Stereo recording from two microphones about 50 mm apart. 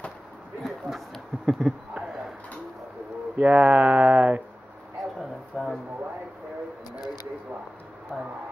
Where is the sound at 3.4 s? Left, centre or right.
Right.